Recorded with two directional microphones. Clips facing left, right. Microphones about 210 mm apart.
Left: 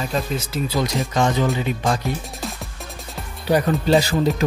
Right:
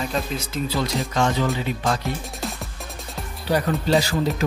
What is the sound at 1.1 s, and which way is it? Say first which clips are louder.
Speech: left 2 dB; 15° left (ahead or behind).